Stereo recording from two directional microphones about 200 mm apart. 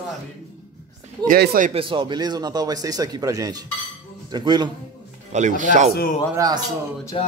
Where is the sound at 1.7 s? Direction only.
25° right (ahead or behind).